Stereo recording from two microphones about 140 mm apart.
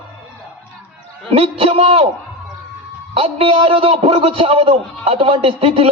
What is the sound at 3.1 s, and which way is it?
A man's voice, 40° right (ahead or behind).